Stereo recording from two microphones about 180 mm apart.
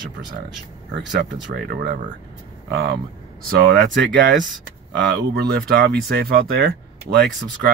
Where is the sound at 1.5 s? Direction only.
65° right (ahead or behind).